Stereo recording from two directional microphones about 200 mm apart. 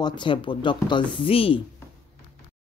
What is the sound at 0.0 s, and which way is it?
Speech, 25° left (ahead or behind).